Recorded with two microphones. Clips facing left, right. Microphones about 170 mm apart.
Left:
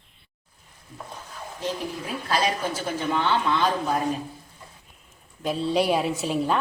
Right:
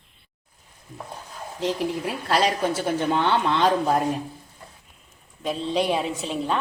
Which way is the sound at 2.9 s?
65° right (ahead or behind).